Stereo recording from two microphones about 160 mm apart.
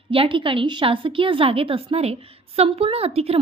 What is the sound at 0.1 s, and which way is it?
A woman's voice, 35° right (ahead or behind).